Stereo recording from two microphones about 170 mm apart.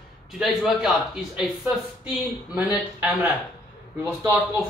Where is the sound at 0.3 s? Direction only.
Centre (ahead or behind).